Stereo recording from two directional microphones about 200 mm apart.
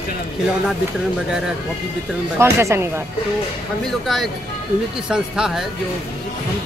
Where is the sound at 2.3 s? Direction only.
15° right (ahead or behind).